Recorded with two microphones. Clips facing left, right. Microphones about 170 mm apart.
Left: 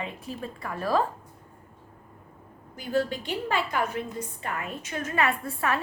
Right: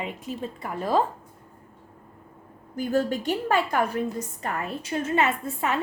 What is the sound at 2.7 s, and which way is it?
A woman's voice, 45° right (ahead or behind).